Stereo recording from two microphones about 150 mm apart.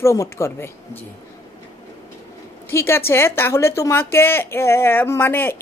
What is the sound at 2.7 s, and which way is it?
Speech, 20° left (ahead or behind).